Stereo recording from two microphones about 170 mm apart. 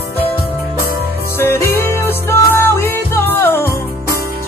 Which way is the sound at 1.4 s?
15° left (ahead or behind).